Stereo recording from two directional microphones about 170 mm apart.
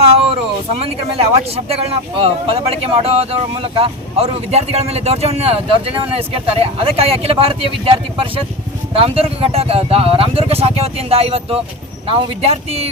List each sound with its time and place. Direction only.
0.8 s speech: 35° right (ahead or behind)